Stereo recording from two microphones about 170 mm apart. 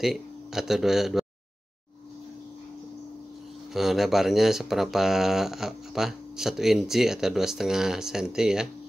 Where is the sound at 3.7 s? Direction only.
Centre (ahead or behind).